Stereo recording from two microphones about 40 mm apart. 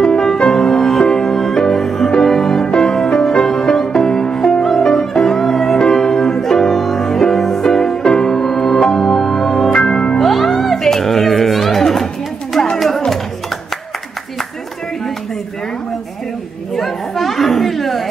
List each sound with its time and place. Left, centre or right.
0.0 s music: centre
9.7 s music: centre
10.2 s music: centre
16.7 s chatter: centre